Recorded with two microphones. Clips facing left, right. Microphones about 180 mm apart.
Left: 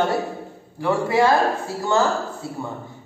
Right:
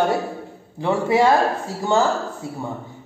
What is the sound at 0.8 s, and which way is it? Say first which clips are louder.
Speech: right 1 dB; 20° right (ahead or behind).